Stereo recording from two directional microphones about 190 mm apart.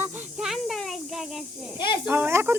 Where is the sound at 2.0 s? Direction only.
10° right (ahead or behind).